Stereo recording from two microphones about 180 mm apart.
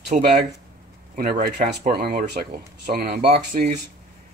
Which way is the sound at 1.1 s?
50° right (ahead or behind).